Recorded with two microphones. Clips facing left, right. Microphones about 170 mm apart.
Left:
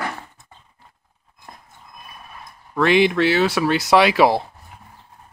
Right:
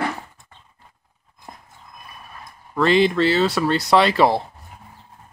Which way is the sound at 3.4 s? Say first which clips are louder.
Left 1 dB; 5° left (ahead or behind).